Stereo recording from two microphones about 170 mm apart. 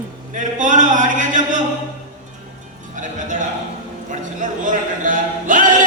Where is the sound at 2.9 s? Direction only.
50° right (ahead or behind).